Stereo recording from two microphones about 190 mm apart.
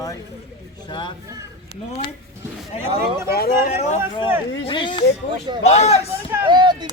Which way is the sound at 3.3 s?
50° left (ahead or behind).